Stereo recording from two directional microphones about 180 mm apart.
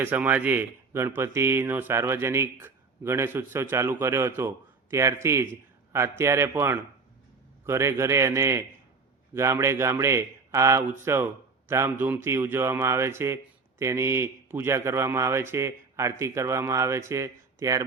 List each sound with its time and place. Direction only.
0.0 s speech: 10° right (ahead or behind)